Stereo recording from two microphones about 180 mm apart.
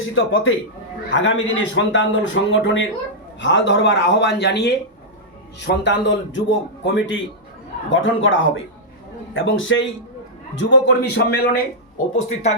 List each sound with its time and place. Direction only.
0.2 s a man's voice: 90° left; by 11.6 s 70° left (ahead or behind)
12.1 s speech: 40° left (ahead or behind)